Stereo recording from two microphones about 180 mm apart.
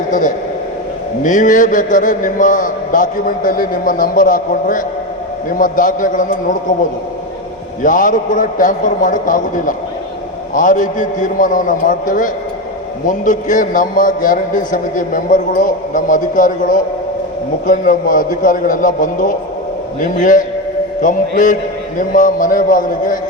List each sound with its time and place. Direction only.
0.1 s a man's voice: 45° left (ahead or behind)
7.8 s a man's voice: 45° left (ahead or behind)